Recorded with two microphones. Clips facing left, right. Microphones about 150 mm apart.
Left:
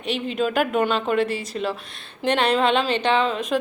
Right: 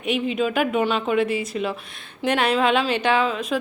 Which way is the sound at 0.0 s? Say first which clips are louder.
Right 1 dB; 5° right (ahead or behind).